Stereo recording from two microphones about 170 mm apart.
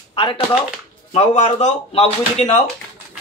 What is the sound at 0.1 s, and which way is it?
Speech, 30° left (ahead or behind).